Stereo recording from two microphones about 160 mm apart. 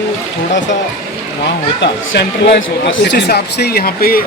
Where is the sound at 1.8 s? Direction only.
90° left.